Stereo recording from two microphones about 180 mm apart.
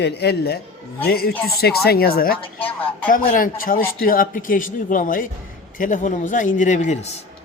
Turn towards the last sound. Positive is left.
turn(degrees=40)  # may be behind; listen again after turning